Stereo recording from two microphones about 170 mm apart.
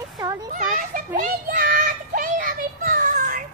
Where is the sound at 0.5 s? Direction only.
50° right (ahead or behind).